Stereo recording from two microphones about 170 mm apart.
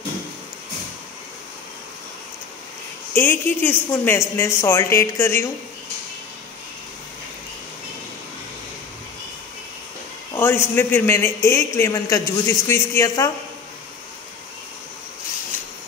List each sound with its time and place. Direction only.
3.2 s a man's voice: 15° left (ahead or behind)
10.3 s a man's voice: 15° left (ahead or behind)